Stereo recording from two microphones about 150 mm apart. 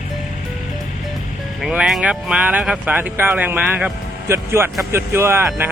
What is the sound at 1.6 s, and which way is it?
Speech, 5° right (ahead or behind).